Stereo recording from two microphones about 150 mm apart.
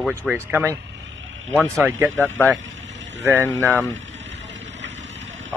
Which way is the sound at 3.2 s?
15° right (ahead or behind).